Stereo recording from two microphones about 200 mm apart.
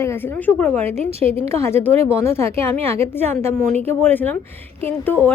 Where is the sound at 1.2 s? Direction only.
30° right (ahead or behind).